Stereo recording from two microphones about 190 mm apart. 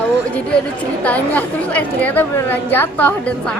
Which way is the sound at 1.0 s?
10° left (ahead or behind).